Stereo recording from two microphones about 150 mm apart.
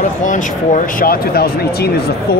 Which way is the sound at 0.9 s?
80° left.